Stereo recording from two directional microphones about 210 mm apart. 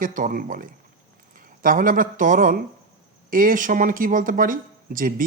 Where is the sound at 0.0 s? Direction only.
40° right (ahead or behind).